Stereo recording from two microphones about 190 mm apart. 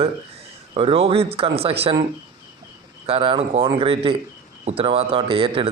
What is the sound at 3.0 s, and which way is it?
Speech, 30° right (ahead or behind).